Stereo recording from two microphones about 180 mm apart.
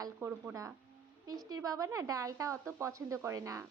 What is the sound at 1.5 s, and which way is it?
A woman's voice, 20° right (ahead or behind).